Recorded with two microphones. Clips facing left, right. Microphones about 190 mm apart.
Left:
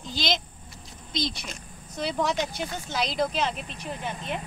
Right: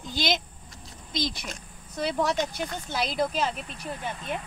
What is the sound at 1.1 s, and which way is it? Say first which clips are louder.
Speech: even; 50° right (ahead or behind).